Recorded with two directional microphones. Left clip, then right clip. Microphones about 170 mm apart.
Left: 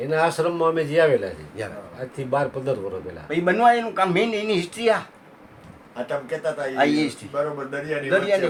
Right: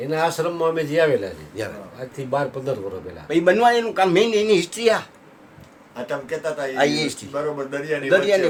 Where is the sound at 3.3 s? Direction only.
90° right.